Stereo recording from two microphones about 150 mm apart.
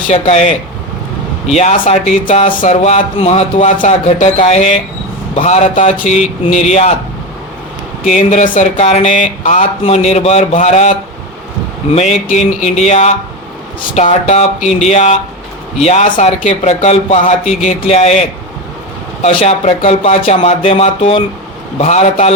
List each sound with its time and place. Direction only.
0.1 s speech: 45° left (ahead or behind)
8.1 s speech: 55° left (ahead or behind)
12.3 s speech: 50° left (ahead or behind)
21.8 s speech: 50° left (ahead or behind)